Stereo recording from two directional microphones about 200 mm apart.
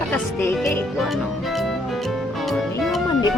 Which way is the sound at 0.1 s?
5° left (ahead or behind).